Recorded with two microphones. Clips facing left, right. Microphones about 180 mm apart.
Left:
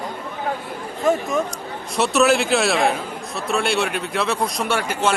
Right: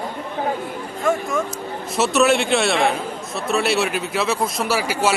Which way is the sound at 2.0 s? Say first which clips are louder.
Even; centre (ahead or behind).